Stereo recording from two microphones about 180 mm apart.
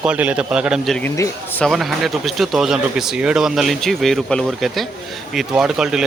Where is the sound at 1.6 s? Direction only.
Centre (ahead or behind).